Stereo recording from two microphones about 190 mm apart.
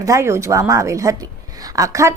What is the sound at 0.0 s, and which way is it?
A woman's voice, 15° right (ahead or behind).